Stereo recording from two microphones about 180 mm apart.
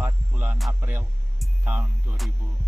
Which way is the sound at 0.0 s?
10° right (ahead or behind).